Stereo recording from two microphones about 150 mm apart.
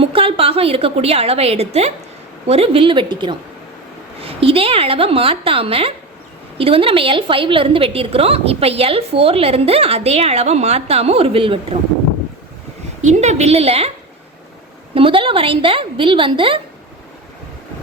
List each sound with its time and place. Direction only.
0.0 s a woman's voice: 35° right (ahead or behind)
13.0 s a woman's voice: 50° right (ahead or behind)
14.9 s a woman's voice: 35° right (ahead or behind)